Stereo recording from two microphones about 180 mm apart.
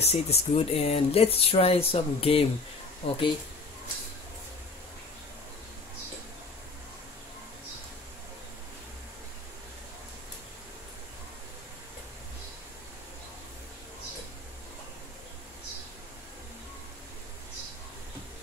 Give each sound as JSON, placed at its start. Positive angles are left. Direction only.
{"t": 0.0, "sound": "speech", "side_deg": 35}